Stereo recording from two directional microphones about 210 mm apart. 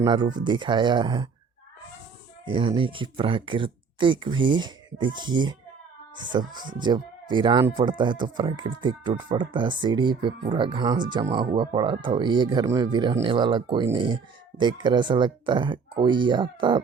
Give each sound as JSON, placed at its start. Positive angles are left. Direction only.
{"t": 0.0, "sound": "speech", "side_deg": -20}
{"t": 2.5, "sound": "speech", "side_deg": -25}